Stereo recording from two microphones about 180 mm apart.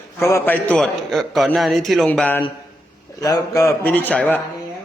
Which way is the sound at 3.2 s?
20° left (ahead or behind).